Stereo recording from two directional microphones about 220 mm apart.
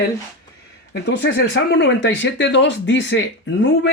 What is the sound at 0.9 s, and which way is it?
Speech, 50° left (ahead or behind).